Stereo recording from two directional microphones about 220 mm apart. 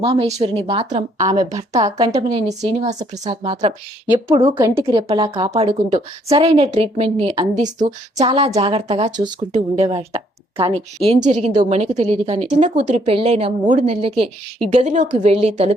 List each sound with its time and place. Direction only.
0.0 s a woman's voice: 25° right (ahead or behind)
4.5 s a woman's voice: 15° right (ahead or behind); by 15.7 s 30° right (ahead or behind)